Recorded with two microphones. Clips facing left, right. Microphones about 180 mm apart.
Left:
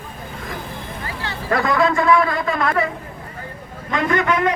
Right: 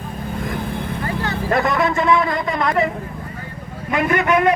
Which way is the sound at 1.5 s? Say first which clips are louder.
Left 1 dB; 20° right (ahead or behind).